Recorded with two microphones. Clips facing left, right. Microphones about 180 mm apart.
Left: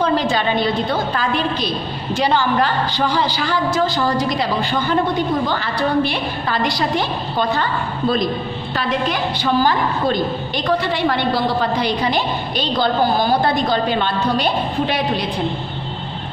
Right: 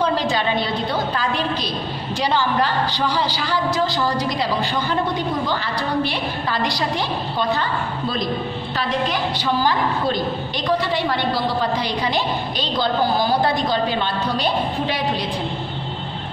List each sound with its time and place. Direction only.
0.0 s a woman's voice: 55° left (ahead or behind)
5.5 s a woman's voice: 55° left (ahead or behind)
8.7 s a woman's voice: 55° left (ahead or behind)
10.8 s a woman's voice: 60° left (ahead or behind)